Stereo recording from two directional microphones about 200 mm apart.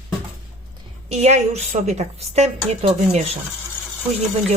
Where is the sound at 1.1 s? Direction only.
35° right (ahead or behind).